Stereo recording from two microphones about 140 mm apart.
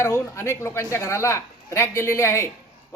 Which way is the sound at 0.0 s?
20° left (ahead or behind).